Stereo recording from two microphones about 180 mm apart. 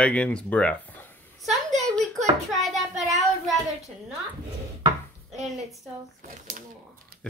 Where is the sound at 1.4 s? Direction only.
Centre (ahead or behind).